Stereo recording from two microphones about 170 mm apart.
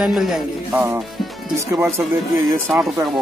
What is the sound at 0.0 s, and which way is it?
Speech, 5° right (ahead or behind).